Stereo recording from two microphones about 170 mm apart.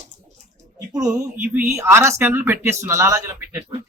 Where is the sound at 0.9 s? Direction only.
20° right (ahead or behind).